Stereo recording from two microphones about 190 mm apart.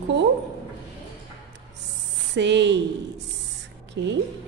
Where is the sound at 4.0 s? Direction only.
65° right (ahead or behind).